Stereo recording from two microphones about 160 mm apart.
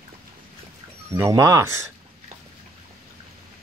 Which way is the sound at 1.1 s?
20° right (ahead or behind).